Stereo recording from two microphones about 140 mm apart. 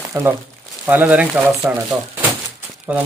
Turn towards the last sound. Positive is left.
turn(degrees=-10)  # may be behind; listen again after turning